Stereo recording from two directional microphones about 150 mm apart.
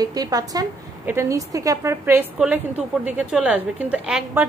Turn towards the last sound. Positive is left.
turn(degrees=-10)  # may be behind; listen again after turning